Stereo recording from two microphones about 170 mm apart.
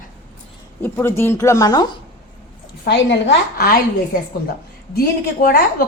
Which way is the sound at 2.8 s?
90° left.